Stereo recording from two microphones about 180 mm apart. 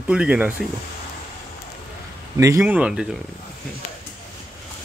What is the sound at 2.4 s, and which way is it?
Speech, 15° right (ahead or behind).